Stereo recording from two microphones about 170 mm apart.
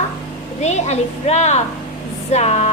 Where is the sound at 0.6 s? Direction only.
40° left (ahead or behind).